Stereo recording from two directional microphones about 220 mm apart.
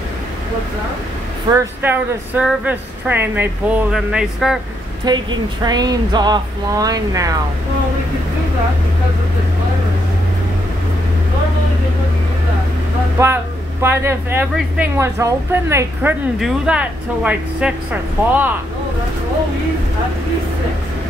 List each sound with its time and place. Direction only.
1.5 s speech: 10° right (ahead or behind)
5.1 s a woman's voice: 20° right (ahead or behind)
13.8 s speech: 10° right (ahead or behind)